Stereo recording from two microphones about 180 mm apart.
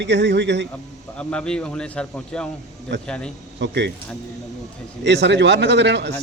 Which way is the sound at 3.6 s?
75° right (ahead or behind).